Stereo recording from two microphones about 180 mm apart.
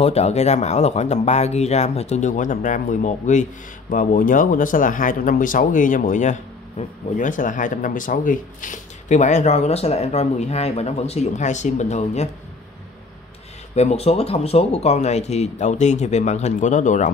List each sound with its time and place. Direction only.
0.0 s speech: 35° left (ahead or behind)
13.7 s speech: 35° left (ahead or behind)